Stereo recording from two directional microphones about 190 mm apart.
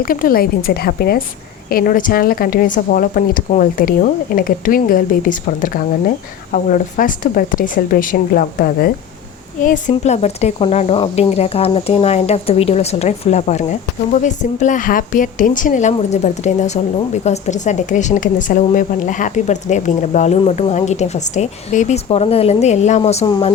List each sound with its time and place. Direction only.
0.0 s speech: 50° left (ahead or behind)
23.2 s speech: 20° left (ahead or behind)